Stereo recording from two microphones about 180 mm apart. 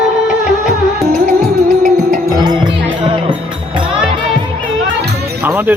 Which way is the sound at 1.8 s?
40° right (ahead or behind).